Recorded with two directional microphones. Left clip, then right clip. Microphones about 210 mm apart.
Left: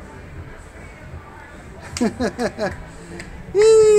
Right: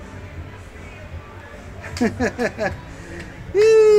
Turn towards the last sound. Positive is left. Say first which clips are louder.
# left 1 dB
turn(degrees=25)  # may be behind; listen again after turning